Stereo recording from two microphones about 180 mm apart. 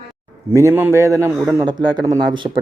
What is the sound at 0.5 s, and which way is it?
Speech, 15° right (ahead or behind).